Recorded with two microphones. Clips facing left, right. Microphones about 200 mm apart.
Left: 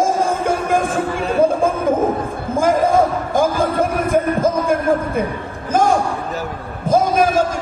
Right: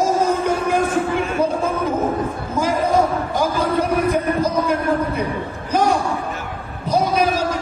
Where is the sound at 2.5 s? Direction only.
50° left (ahead or behind).